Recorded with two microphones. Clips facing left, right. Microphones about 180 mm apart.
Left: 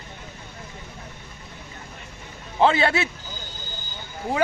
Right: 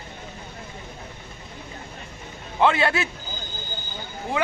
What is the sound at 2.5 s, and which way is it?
Speech, 30° left (ahead or behind).